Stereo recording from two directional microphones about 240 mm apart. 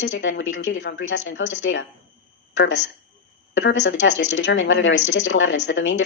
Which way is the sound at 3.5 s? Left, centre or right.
Left.